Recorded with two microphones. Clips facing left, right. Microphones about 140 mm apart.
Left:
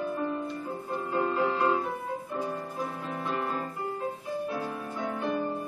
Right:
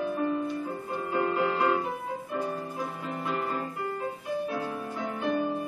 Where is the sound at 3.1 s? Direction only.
Centre (ahead or behind).